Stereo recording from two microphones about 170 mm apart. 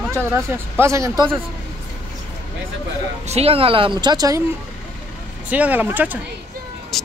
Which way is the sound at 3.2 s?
35° right (ahead or behind).